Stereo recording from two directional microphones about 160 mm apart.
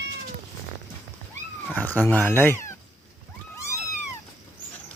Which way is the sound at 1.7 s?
10° left (ahead or behind).